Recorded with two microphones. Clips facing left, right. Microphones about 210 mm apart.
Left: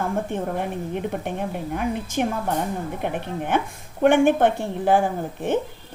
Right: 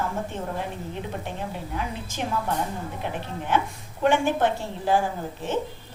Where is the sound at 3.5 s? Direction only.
55° left (ahead or behind).